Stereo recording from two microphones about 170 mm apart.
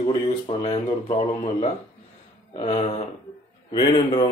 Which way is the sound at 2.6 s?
35° left (ahead or behind).